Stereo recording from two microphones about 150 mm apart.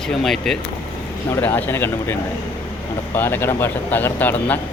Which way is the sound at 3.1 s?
15° left (ahead or behind).